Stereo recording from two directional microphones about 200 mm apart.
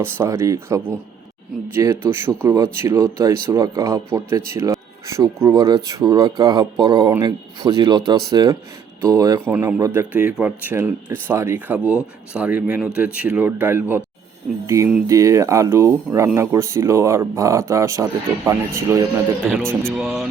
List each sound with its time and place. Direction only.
0.0 s speech: 15° right (ahead or behind)